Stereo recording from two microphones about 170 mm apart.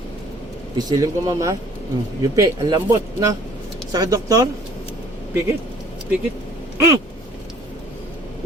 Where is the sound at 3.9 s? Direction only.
20° right (ahead or behind).